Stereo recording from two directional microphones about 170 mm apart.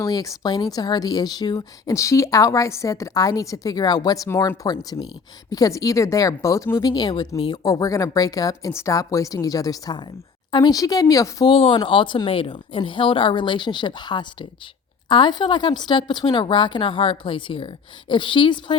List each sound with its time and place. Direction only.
0.0 s speech: 20° left (ahead or behind)